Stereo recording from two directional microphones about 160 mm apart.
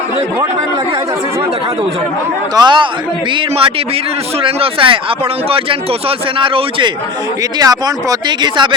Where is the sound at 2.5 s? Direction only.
30° right (ahead or behind).